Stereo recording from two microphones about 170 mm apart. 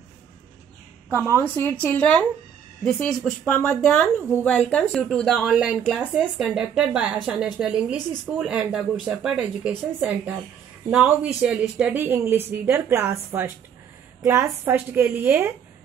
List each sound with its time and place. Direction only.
1.3 s a woman's voice: 10° left (ahead or behind); by 15.5 s 10° right (ahead or behind)